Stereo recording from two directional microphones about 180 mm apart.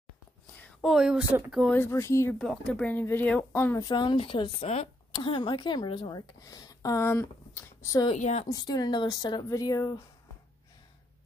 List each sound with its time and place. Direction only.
0.7 s speech: centre (ahead or behind)
1.8 s speech: 15° left (ahead or behind)
2.3 s speech: 5° left (ahead or behind)
8.1 s a woman's voice: 40° left (ahead or behind)
8.5 s speech: 20° left (ahead or behind)